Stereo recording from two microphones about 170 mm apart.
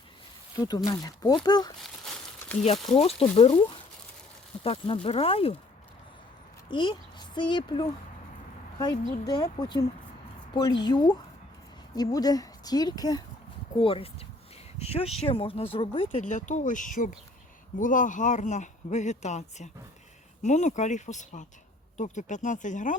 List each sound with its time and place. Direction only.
0.5 s a woman's voice: 25° left (ahead or behind)
1.8 s a sound: centre (ahead or behind)
2.9 s speech: 35° left (ahead or behind)
4.6 s speech: 35° left (ahead or behind)
6.7 s a woman's voice: 30° left (ahead or behind); by 23.0 s 50° left (ahead or behind)